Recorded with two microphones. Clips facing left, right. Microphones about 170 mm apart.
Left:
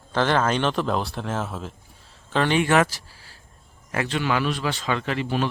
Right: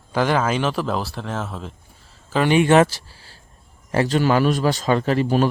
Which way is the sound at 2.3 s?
10° right (ahead or behind).